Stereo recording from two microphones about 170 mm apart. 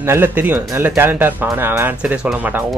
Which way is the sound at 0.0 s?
15° right (ahead or behind).